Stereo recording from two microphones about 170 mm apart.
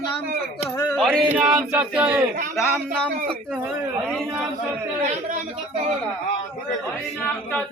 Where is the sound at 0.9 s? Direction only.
Centre (ahead or behind).